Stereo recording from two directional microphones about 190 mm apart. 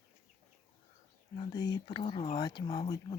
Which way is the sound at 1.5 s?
20° left (ahead or behind).